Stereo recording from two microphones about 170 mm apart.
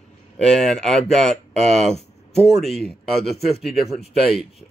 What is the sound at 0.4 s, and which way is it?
Speech, 5° left (ahead or behind).